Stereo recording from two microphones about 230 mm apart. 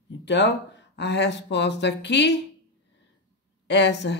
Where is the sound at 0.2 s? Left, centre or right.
Left.